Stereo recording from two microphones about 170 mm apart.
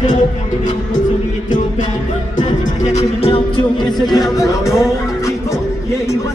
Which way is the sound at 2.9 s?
35° left (ahead or behind).